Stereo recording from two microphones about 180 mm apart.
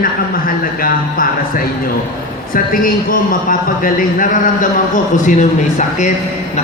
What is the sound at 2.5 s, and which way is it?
A man's voice, 50° left (ahead or behind).